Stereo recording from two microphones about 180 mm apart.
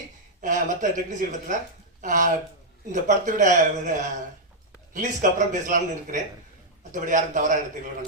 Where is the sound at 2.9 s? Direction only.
45° right (ahead or behind).